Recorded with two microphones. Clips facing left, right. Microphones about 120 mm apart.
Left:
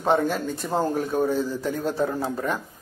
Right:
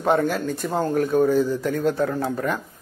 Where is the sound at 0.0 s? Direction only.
Centre (ahead or behind).